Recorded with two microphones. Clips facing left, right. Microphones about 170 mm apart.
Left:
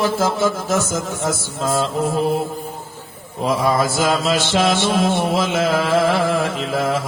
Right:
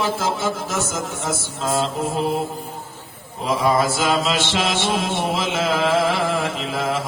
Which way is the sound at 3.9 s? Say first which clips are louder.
Left 2 dB; 40° left (ahead or behind).